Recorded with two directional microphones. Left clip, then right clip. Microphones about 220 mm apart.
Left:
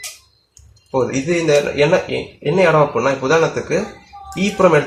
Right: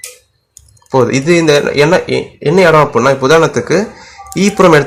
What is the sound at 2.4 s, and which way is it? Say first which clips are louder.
Speech: right 6 dB; 45° right (ahead or behind).